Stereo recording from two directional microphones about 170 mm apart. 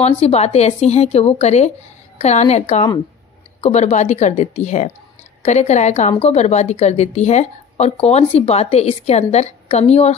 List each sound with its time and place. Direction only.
0.0 s a woman's voice: 35° left (ahead or behind)